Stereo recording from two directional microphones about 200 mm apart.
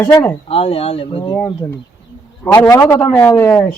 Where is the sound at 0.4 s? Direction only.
30° left (ahead or behind).